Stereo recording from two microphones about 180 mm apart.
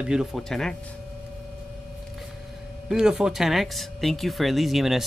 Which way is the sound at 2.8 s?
5° right (ahead or behind).